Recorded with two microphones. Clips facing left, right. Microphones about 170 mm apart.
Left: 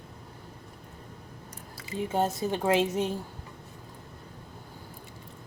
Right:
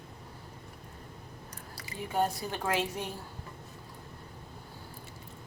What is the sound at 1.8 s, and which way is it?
A woman's voice, 20° left (ahead or behind).